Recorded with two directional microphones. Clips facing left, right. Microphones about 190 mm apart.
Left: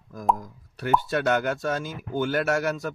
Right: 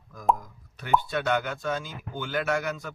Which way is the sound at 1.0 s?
45° left (ahead or behind).